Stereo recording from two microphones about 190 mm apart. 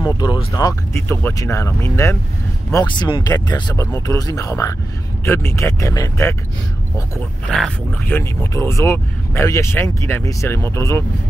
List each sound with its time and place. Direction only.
0.0 s speech: 20° left (ahead or behind)
7.4 s speech: centre (ahead or behind)
8.0 s speech: 15° left (ahead or behind)